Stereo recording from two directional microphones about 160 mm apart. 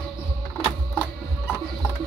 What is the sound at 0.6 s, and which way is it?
Music, 5° left (ahead or behind).